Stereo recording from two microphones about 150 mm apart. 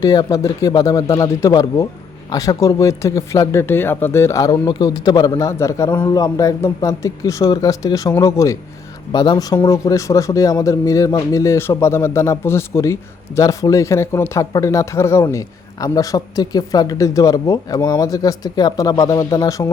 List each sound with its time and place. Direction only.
0.0 s speech: 25° left (ahead or behind)